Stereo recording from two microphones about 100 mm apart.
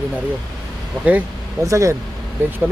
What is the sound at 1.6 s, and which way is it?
Speech, 30° right (ahead or behind).